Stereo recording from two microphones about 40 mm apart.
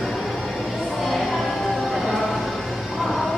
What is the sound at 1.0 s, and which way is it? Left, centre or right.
Music, centre.